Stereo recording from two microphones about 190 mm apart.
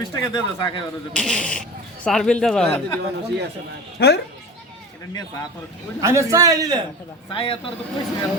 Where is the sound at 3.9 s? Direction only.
60° left (ahead or behind).